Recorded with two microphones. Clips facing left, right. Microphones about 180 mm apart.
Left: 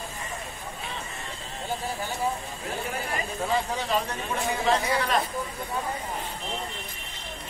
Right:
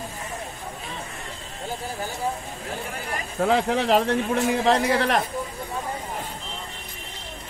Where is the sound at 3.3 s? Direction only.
75° right (ahead or behind).